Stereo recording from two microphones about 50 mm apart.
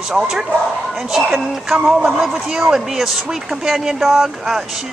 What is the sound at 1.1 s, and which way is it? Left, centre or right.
Speech, centre.